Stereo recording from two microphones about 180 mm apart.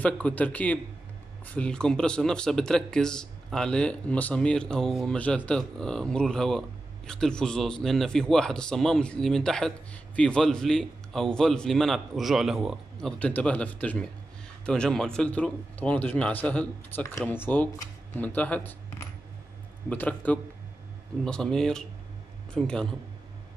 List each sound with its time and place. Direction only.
0.0 s a man's voice: 10° left (ahead or behind)
19.9 s a man's voice: 10° left (ahead or behind)